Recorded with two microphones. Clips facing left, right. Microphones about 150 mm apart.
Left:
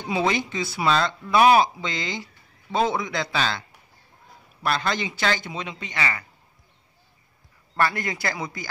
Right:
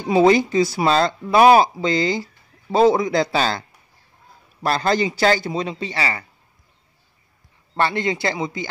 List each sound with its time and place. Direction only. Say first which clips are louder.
0.1 s speech: right 10 dB; 35° right (ahead or behind)
4.6 s speech: right 6 dB; 40° right (ahead or behind)
7.7 s speech: right 4 dB; 25° right (ahead or behind)